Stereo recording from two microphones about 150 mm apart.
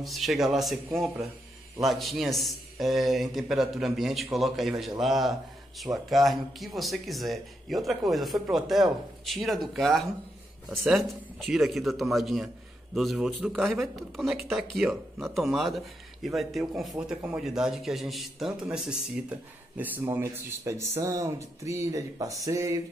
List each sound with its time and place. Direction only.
0.0 s speech: centre (ahead or behind); by 22.8 s 20° right (ahead or behind)